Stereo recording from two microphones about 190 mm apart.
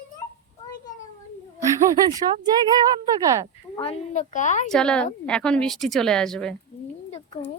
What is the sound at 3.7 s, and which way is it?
Speech, 35° left (ahead or behind).